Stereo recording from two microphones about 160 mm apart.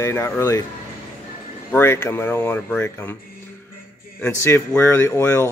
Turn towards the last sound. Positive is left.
turn(degrees=15)  # may be behind; listen again after turning